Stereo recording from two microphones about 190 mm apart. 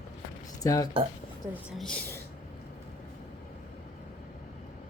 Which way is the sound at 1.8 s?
5° left (ahead or behind).